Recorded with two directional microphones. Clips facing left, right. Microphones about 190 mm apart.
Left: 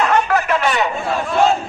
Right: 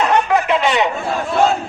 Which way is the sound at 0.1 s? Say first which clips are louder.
Right 1 dB; 20° right (ahead or behind).